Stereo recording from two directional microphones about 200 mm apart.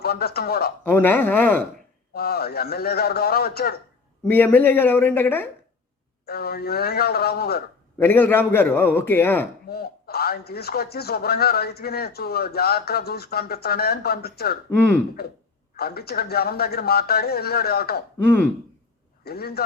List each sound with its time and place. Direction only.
0.0 s speech: 50° left (ahead or behind)
0.9 s a man's voice: 10° left (ahead or behind)
2.1 s speech: 50° left (ahead or behind)
4.3 s a man's voice: 10° left (ahead or behind)
6.2 s speech: 50° left (ahead or behind)
7.9 s a man's voice: 10° left (ahead or behind)
9.6 s speech: 50° left (ahead or behind)
18.3 s a man's voice: 10° left (ahead or behind)
19.2 s speech: 50° left (ahead or behind)